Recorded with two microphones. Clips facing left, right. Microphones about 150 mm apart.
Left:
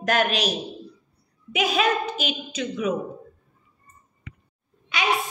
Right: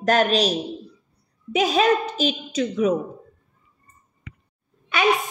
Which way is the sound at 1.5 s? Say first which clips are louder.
Right 4 dB; 35° right (ahead or behind).